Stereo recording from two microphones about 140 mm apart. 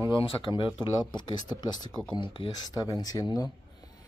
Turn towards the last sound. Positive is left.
turn(degrees=25)  # may be behind; listen again after turning